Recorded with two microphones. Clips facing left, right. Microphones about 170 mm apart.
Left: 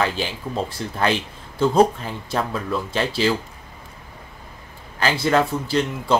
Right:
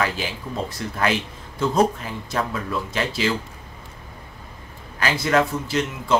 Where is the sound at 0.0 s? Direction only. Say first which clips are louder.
Left 2 dB; 30° left (ahead or behind).